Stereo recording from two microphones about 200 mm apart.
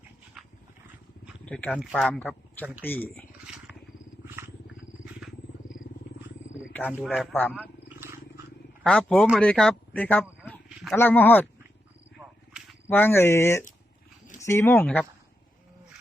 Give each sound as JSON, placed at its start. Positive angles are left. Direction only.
{"t": 1.5, "sound": "speech", "side_deg": 5}
{"t": 6.8, "sound": "speech", "side_deg": 0}
{"t": 7.5, "sound": "wild animals", "side_deg": -5}
{"t": 8.8, "sound": "speech", "side_deg": 5}
{"t": 12.9, "sound": "speech", "side_deg": 10}